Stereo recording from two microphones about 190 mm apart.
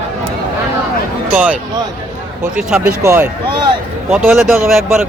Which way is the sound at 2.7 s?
10° right (ahead or behind).